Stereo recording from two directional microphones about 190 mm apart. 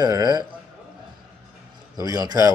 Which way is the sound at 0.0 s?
20° right (ahead or behind).